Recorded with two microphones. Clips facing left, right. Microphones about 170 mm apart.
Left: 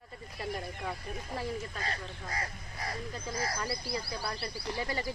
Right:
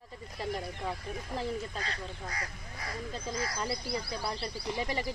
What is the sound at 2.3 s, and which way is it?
Speech, 30° left (ahead or behind).